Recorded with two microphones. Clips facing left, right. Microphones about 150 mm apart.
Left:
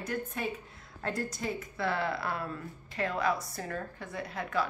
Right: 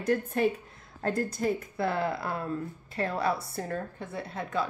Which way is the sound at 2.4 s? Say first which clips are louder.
Right 6 dB; 30° right (ahead or behind).